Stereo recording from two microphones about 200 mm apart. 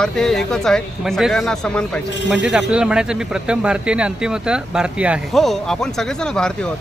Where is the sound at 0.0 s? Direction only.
5° left (ahead or behind).